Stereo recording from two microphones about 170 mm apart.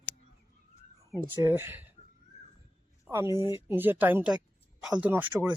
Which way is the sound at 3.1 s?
15° right (ahead or behind).